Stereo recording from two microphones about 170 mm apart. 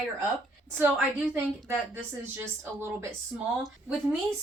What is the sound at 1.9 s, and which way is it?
Speech, 10° right (ahead or behind).